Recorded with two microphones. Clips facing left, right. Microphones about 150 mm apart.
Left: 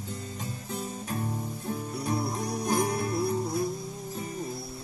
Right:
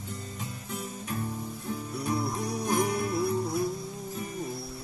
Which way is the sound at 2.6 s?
35° left (ahead or behind).